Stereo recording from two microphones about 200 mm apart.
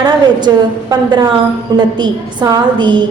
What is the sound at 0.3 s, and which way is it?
Speech, 20° right (ahead or behind).